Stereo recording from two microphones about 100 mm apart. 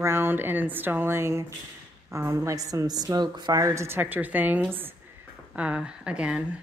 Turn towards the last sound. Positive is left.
turn(degrees=-10)  # may be behind; listen again after turning